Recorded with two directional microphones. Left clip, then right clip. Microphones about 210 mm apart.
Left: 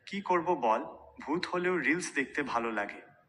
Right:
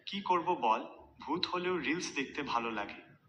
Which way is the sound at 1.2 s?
40° left (ahead or behind).